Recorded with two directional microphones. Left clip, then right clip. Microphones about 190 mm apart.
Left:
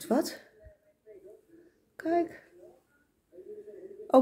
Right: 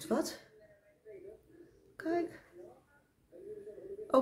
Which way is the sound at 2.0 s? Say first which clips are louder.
Left 6 dB; 30° left (ahead or behind).